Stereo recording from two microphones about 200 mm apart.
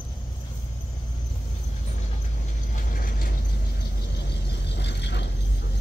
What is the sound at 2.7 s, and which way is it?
Vehicle, 45° left (ahead or behind).